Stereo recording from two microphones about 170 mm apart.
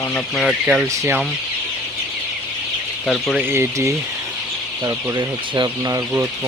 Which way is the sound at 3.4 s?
15° right (ahead or behind).